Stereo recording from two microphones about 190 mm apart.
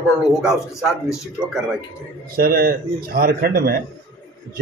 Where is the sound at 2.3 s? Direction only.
50° right (ahead or behind).